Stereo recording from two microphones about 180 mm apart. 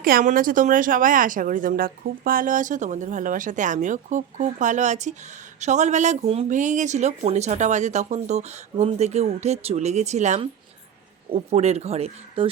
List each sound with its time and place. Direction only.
0.0 s speech: 50° right (ahead or behind); by 12.5 s 35° right (ahead or behind)